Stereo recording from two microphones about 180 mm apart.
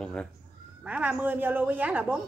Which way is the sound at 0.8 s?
10° right (ahead or behind).